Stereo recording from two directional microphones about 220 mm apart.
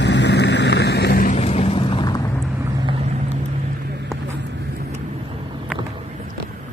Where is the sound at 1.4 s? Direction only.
30° left (ahead or behind).